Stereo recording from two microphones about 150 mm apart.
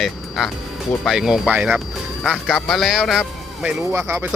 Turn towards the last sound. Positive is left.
turn(degrees=-20)  # may be behind; listen again after turning